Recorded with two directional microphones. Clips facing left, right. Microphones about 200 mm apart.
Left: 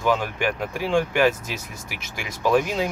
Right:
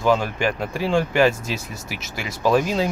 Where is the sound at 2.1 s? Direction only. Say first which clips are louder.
Right 1 dB; 15° left (ahead or behind).